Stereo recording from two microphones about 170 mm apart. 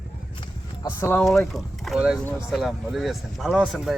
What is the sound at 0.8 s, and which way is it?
Speech, 15° left (ahead or behind).